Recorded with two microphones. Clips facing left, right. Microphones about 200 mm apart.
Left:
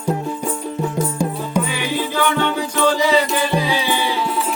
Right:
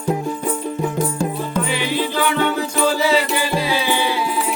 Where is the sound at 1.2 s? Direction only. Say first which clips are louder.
Left 1 dB; 10° left (ahead or behind).